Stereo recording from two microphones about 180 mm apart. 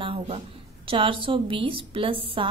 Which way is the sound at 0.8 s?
30° right (ahead or behind).